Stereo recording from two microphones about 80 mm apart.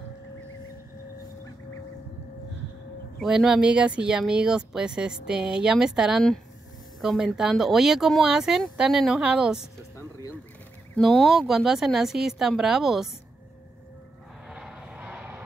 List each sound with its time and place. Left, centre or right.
3.2 s speech: centre
9.9 s a sound: left
11.0 s speech: centre
14.5 s vehicle: centre; by 15.3 s right